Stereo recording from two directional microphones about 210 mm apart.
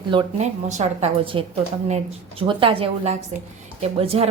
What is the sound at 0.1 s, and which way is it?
A woman's voice, 25° right (ahead or behind).